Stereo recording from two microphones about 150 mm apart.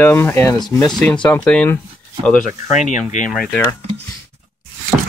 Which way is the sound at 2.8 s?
55° left (ahead or behind).